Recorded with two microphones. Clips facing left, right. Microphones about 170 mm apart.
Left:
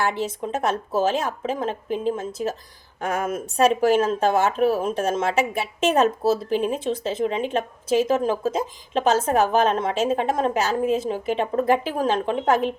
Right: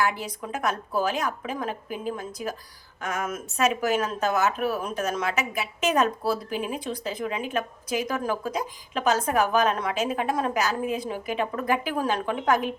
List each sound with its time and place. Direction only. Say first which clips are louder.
0.0 s speech: left 3 dB; 25° left (ahead or behind)